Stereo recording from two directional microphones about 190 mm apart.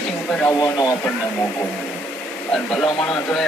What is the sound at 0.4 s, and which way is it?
Speech, 20° left (ahead or behind).